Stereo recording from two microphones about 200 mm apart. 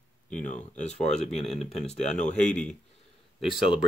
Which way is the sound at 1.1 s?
Centre (ahead or behind).